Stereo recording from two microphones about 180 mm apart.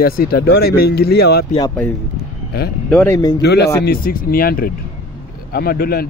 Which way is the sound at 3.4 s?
65° left (ahead or behind).